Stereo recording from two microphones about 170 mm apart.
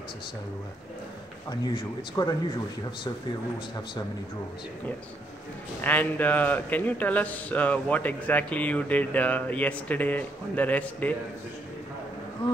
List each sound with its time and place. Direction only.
1.5 s speech: 25° left (ahead or behind)
3.5 s speech: 30° left (ahead or behind)
5.8 s a man's voice: 10° left (ahead or behind)